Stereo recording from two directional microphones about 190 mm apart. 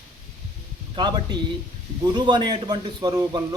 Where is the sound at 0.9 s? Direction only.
25° right (ahead or behind).